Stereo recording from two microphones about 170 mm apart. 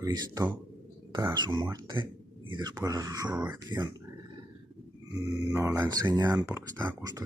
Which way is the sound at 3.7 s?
10° right (ahead or behind).